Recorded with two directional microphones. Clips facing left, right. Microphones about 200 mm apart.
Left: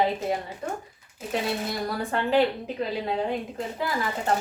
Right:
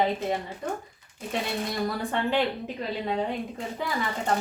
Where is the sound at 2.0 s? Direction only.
Centre (ahead or behind).